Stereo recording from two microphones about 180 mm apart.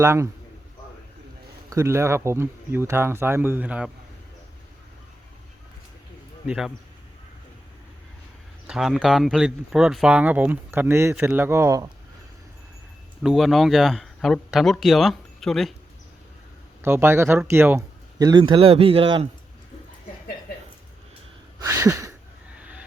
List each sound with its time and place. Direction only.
0.0 s speech: 15° right (ahead or behind)
1.7 s speech: 15° right (ahead or behind)
6.4 s speech: 5° right (ahead or behind)
8.6 s speech: 5° right (ahead or behind)
13.2 s speech: centre (ahead or behind)
16.8 s speech: 15° right (ahead or behind); by 19.3 s 30° right (ahead or behind)
21.6 s a sound: 15° right (ahead or behind)